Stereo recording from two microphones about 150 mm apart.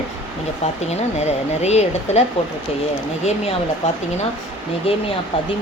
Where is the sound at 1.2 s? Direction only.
45° left (ahead or behind).